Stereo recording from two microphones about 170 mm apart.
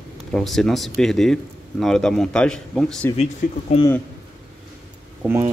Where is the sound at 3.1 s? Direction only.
40° left (ahead or behind).